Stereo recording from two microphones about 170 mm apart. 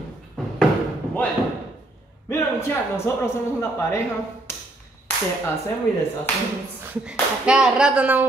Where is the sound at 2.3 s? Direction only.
15° left (ahead or behind).